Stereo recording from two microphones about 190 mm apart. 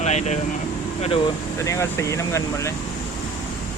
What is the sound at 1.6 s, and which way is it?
Speech, 15° left (ahead or behind).